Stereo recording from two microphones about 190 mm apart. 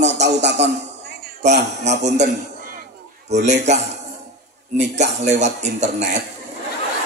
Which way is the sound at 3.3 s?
35° right (ahead or behind).